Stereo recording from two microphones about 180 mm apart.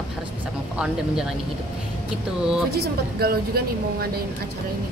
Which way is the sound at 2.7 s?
60° right (ahead or behind).